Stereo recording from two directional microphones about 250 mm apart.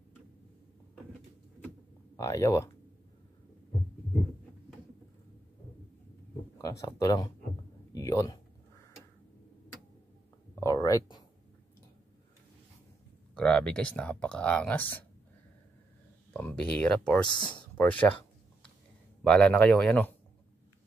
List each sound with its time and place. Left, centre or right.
2.1 s speech: centre
6.6 s a man's voice: centre
10.6 s a sound: centre
13.3 s speech: centre
16.3 s speech: centre
17.4 s speech: centre
17.7 s speech: centre
19.2 s speech: centre